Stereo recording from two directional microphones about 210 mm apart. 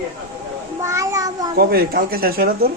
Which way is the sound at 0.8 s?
15° right (ahead or behind).